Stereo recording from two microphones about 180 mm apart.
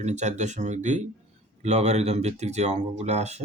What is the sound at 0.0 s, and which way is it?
Speech, 40° right (ahead or behind).